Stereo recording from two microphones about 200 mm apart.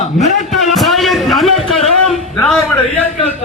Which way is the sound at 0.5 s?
Centre (ahead or behind).